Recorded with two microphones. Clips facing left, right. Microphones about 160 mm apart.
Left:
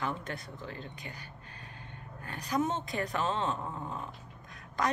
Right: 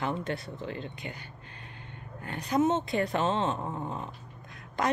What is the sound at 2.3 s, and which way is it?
Speech, 25° right (ahead or behind).